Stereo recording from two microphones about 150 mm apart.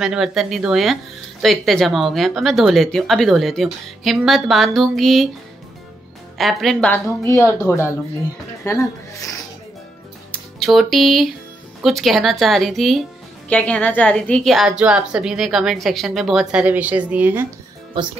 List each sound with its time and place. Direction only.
0.0 s a woman's voice: 5° right (ahead or behind)
6.3 s a woman's voice: centre (ahead or behind)
7.2 s a woman's voice: 20° left (ahead or behind)
10.6 s a woman's voice: centre (ahead or behind)